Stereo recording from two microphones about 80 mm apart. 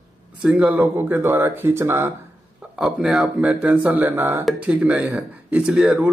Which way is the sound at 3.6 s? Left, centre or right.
Right.